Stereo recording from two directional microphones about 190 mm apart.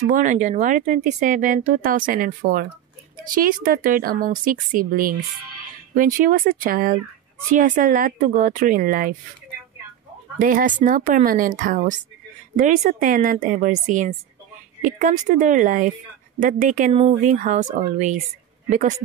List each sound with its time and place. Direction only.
0.0 s speech: 40° right (ahead or behind)
10.4 s speech: 45° right (ahead or behind)